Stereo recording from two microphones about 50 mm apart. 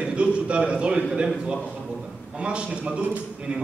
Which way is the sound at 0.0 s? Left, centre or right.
Right.